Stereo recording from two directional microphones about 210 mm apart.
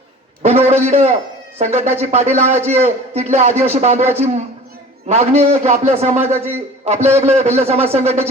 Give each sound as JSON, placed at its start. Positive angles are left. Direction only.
{"t": 0.4, "sound": "a man's voice", "side_deg": -30}
{"t": 4.0, "sound": "a man's voice", "side_deg": -10}
{"t": 5.0, "sound": "a man's voice", "side_deg": -30}